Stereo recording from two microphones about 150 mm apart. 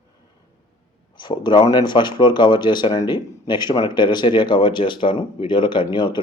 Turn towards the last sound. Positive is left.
turn(degrees=30)  # may be behind; listen again after turning